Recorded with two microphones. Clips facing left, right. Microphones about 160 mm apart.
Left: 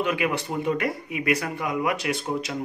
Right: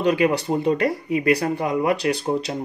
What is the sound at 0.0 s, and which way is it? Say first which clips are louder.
Speech: right 6 dB; 35° right (ahead or behind).